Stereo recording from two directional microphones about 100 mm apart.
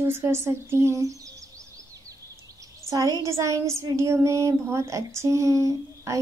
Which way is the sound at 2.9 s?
35° right (ahead or behind).